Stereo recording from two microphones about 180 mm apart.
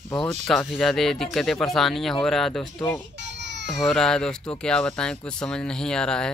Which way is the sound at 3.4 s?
75° right (ahead or behind).